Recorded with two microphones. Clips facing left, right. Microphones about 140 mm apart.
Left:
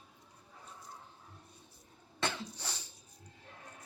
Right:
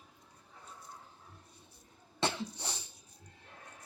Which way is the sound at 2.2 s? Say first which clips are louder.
Right 3 dB; 30° right (ahead or behind).